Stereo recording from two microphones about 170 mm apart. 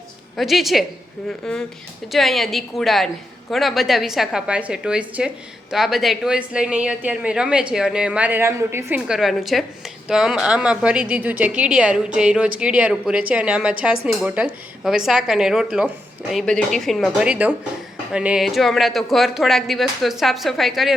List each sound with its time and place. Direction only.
0.3 s a woman's voice: centre (ahead or behind)
9.0 s speech: centre (ahead or behind)